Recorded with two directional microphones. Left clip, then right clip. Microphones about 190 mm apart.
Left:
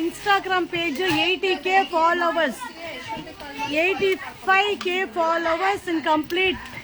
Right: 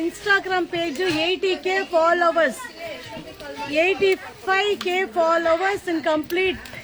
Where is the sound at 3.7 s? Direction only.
Centre (ahead or behind).